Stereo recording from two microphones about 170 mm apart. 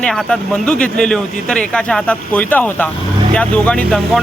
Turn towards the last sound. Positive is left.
turn(degrees=5)  # may be behind; listen again after turning